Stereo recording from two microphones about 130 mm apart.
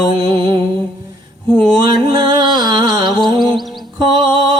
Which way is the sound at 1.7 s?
35° right (ahead or behind).